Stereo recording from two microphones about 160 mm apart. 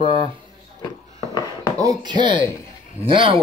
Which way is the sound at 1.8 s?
30° right (ahead or behind).